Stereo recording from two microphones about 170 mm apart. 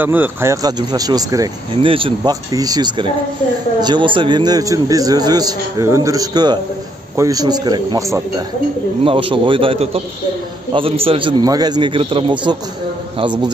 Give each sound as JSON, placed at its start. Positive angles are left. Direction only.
{"t": 0.0, "sound": "a man's voice", "side_deg": -10}
{"t": 1.9, "sound": "a man's voice", "side_deg": -30}
{"t": 9.0, "sound": "a man's voice", "side_deg": -30}